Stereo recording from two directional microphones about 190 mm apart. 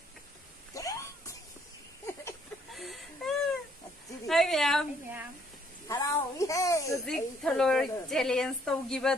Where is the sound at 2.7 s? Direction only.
Centre (ahead or behind).